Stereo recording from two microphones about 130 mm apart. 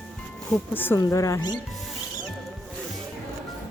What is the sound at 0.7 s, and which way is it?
Speech, 15° left (ahead or behind).